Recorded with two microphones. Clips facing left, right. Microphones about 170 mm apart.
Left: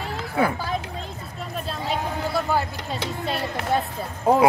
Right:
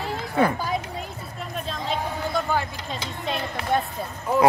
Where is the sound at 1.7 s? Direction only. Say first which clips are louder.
Left 1 dB; 10° left (ahead or behind).